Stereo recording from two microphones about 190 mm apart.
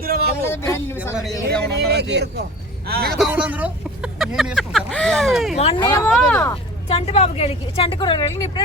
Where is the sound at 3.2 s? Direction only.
5° right (ahead or behind).